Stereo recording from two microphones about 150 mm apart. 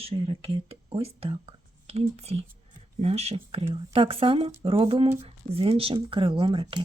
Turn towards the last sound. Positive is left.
turn(degrees=-35)  # may be behind; listen again after turning